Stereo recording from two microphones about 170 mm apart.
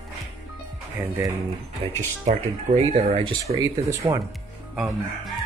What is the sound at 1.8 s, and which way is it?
Speech, 25° right (ahead or behind).